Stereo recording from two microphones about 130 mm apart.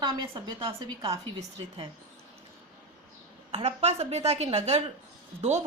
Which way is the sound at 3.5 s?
55° right (ahead or behind).